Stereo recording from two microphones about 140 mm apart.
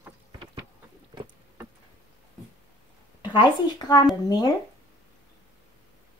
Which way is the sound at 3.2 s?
30° left (ahead or behind).